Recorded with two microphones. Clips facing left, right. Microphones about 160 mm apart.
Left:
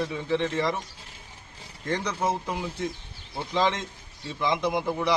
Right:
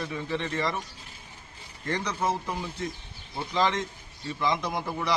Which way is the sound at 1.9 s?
20° left (ahead or behind).